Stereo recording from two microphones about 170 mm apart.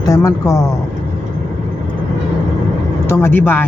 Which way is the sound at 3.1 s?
15° left (ahead or behind).